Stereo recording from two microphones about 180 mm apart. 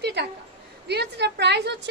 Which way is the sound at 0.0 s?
65° right (ahead or behind).